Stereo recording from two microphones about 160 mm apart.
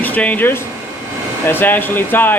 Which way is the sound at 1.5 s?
10° left (ahead or behind).